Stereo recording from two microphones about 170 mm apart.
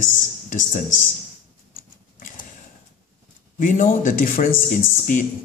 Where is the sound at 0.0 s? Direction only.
50° left (ahead or behind).